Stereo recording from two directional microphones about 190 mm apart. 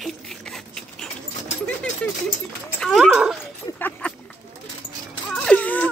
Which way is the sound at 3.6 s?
10° left (ahead or behind).